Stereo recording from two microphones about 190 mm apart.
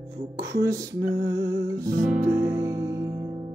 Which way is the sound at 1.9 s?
45° right (ahead or behind).